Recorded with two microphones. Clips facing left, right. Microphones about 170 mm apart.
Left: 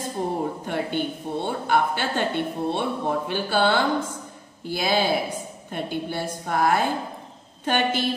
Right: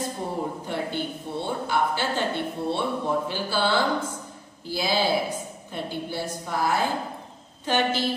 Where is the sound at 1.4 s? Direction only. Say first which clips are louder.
Left 2 dB; 55° left (ahead or behind).